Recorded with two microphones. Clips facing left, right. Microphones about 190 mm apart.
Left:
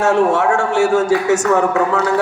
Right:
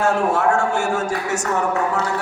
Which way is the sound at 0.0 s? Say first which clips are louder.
Left 4 dB; 80° left.